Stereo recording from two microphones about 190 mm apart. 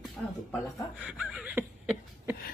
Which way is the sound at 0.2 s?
Centre (ahead or behind).